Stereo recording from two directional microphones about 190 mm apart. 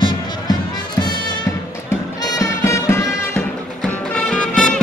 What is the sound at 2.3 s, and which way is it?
Music, 15° left (ahead or behind).